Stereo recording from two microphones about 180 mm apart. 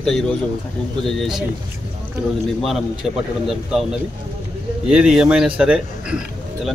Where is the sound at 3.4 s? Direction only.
Centre (ahead or behind).